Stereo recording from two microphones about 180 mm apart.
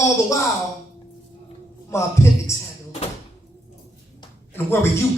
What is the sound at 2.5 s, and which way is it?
Speech, 15° left (ahead or behind).